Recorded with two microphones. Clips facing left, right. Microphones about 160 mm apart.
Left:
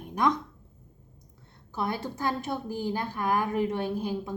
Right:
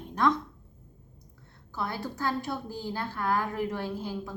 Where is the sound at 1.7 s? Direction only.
20° left (ahead or behind).